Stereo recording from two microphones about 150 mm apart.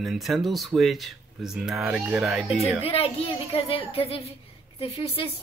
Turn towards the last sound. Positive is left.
turn(degrees=35)  # may be behind; listen again after turning